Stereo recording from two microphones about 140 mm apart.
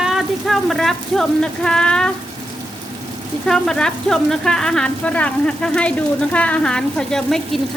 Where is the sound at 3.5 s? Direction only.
5° left (ahead or behind).